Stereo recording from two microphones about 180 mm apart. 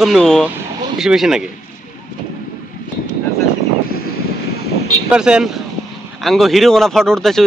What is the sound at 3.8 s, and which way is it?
Vehicle, 55° left (ahead or behind).